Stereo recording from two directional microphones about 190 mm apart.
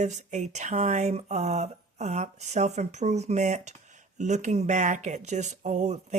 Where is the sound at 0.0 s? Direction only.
40° right (ahead or behind).